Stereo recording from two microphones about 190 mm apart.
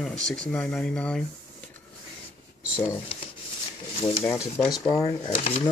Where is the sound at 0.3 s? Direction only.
5° left (ahead or behind).